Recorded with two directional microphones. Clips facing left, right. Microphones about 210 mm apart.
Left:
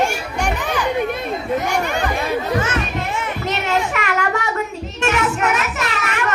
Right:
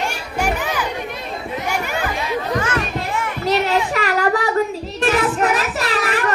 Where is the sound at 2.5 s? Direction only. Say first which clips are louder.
Even; 25° left (ahead or behind).